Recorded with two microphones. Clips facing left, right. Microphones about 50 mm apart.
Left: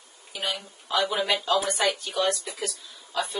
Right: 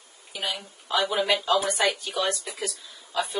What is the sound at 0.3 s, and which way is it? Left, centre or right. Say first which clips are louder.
A woman's voice: even; centre.